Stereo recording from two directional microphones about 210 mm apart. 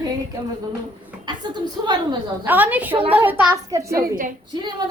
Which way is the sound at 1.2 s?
20° right (ahead or behind).